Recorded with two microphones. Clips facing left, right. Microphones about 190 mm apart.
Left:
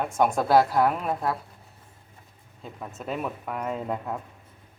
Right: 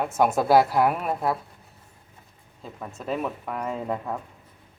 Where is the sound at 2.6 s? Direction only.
Centre (ahead or behind).